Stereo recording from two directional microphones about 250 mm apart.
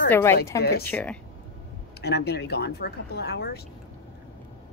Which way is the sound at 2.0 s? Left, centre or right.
Left.